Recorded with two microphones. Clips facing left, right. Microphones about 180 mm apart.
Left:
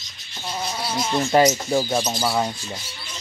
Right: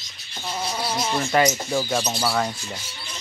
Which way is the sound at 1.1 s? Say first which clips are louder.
Left 4 dB; 25° left (ahead or behind).